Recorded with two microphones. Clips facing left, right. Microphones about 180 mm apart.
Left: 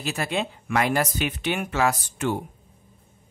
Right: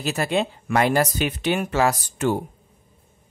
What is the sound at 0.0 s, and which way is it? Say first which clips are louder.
Speech: right 4 dB; 40° right (ahead or behind).